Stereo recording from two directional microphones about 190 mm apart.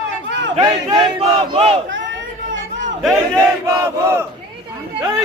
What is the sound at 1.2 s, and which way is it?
Battle cry, 30° right (ahead or behind).